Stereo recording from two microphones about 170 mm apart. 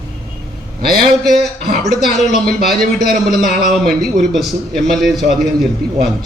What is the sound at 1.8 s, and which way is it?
A man's voice, centre (ahead or behind).